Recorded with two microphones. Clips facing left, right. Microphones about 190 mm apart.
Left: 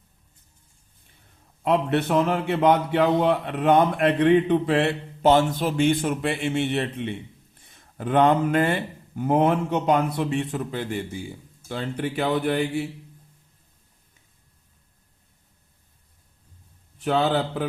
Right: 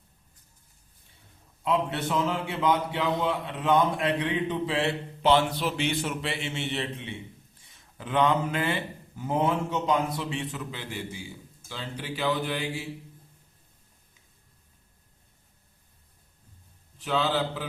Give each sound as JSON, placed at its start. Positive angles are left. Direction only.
{"t": 1.6, "sound": "a man's voice", "side_deg": 60}
{"t": 17.0, "sound": "a man's voice", "side_deg": 55}